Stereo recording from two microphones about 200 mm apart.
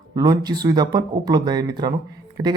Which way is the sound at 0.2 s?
20° right (ahead or behind).